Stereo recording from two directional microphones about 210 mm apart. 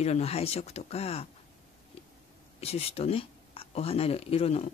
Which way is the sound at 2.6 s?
30° left (ahead or behind).